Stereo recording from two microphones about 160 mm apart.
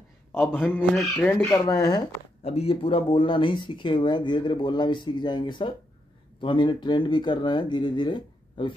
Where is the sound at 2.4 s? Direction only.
40° left (ahead or behind).